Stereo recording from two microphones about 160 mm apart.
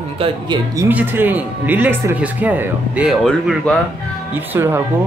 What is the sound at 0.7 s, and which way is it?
A man's voice, 10° right (ahead or behind).